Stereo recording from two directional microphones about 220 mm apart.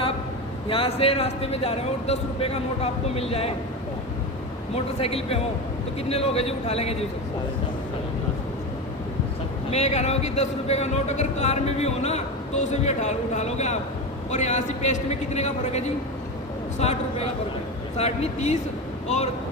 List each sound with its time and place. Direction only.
0.7 s speech: 25° left (ahead or behind)
4.7 s speech: 25° left (ahead or behind)
9.6 s a man's voice: 30° left (ahead or behind)
16.8 s a man's voice: 30° left (ahead or behind)